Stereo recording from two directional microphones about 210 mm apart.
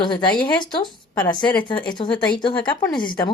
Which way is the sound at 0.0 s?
20° left (ahead or behind).